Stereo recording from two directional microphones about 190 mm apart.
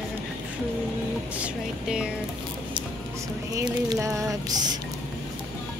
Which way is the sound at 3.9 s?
15° right (ahead or behind).